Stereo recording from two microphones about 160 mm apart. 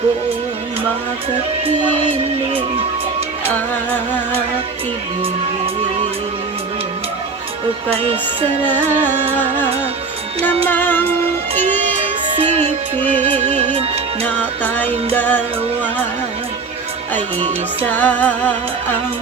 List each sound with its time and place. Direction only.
7.9 s music: 35° right (ahead or behind)
8.6 s music: 10° left (ahead or behind)
12.5 s music: 45° right (ahead or behind)
14.3 s music: 10° left (ahead or behind)
17.9 s music: 10° left (ahead or behind)